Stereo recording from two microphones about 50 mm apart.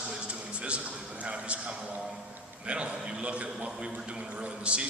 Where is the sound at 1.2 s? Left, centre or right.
Right.